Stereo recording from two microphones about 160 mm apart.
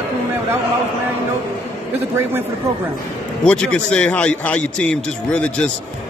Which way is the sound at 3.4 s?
5° left (ahead or behind).